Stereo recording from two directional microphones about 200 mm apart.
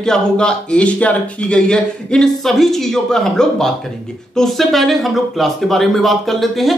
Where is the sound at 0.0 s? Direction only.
5° left (ahead or behind).